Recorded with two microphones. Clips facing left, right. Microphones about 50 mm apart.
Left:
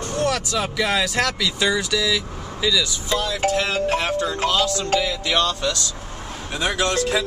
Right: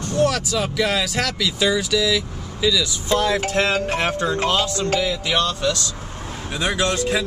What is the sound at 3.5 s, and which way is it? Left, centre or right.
Music, right.